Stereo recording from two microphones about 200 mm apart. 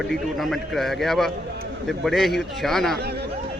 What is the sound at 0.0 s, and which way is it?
A man's voice, centre (ahead or behind).